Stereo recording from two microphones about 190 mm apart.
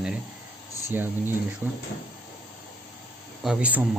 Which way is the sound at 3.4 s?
5° right (ahead or behind).